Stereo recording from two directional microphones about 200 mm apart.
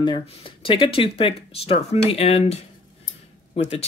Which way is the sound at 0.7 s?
25° left (ahead or behind).